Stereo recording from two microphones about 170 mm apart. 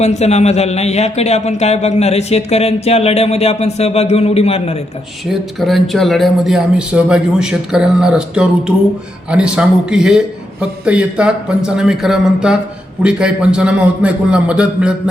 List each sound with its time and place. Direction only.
0.0 s a man's voice: 40° left (ahead or behind)
5.3 s speech: centre (ahead or behind)